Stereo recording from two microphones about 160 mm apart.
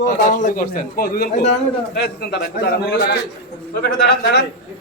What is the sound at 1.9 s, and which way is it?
A man's voice, 90° left.